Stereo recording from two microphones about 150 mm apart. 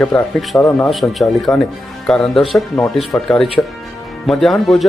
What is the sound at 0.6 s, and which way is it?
Speech, 15° left (ahead or behind).